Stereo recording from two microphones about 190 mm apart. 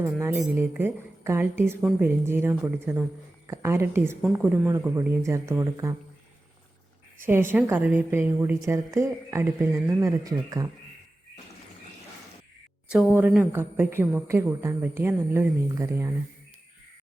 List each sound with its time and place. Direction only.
0.0 s a woman's voice: 10° right (ahead or behind)
7.2 s a woman's voice: 10° right (ahead or behind)
13.1 s a woman's voice: 10° right (ahead or behind)